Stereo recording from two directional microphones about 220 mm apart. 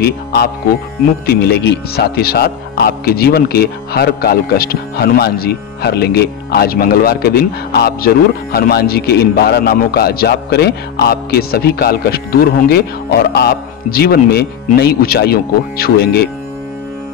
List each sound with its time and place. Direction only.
0.0 s speech: 45° left (ahead or behind)